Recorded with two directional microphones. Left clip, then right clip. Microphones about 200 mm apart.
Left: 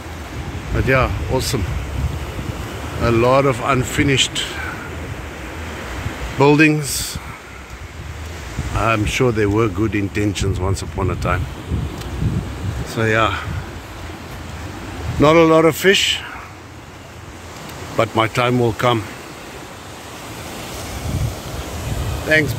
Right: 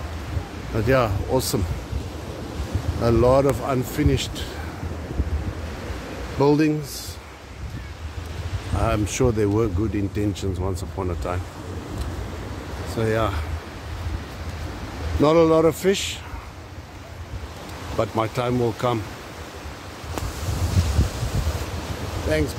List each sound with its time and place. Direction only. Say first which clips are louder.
0.8 s speech: left 3 dB; 20° right (ahead or behind)
3.0 s speech: left 3 dB; 15° right (ahead or behind)
6.4 s speech: left 6 dB; centre (ahead or behind)
8.8 s speech: left 5 dB; 10° right (ahead or behind)
12.9 s speech: left 7 dB; 5° right (ahead or behind)
15.2 s speech: left 5 dB; centre (ahead or behind)
17.9 s speech: left 7 dB; centre (ahead or behind)
22.3 s speech: left 8 dB; 5° right (ahead or behind)